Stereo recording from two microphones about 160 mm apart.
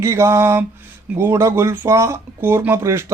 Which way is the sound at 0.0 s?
15° right (ahead or behind).